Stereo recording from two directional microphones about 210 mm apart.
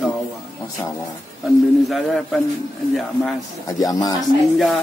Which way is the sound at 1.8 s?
Centre (ahead or behind).